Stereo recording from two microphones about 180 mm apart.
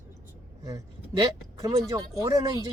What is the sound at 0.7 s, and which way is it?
Speech, 20° right (ahead or behind).